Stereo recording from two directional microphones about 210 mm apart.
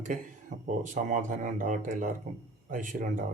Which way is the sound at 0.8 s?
40° right (ahead or behind).